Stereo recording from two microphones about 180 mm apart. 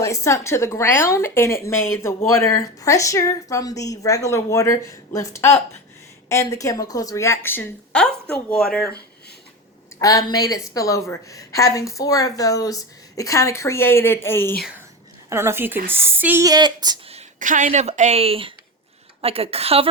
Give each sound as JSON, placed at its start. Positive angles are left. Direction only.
{"t": 0.0, "sound": "a woman's voice", "side_deg": 15}
{"t": 10.0, "sound": "a woman's voice", "side_deg": 20}
{"t": 14.6, "sound": "speech", "side_deg": -5}
{"t": 17.2, "sound": "speech", "side_deg": -45}